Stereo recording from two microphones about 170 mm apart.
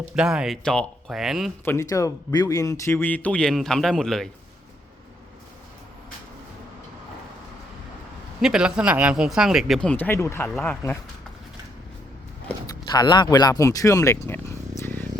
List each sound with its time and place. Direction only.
0.2 s speech: 5° right (ahead or behind)
1.6 s speech: 15° left (ahead or behind)
8.4 s speech: 5° right (ahead or behind)
12.6 s speech: 25° left (ahead or behind)